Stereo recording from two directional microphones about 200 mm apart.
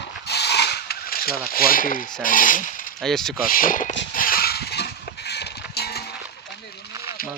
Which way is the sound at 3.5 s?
45° left (ahead or behind).